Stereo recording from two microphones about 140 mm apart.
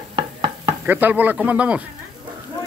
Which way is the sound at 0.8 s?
15° right (ahead or behind).